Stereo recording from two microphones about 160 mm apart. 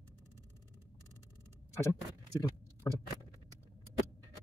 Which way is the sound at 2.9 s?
20° left (ahead or behind).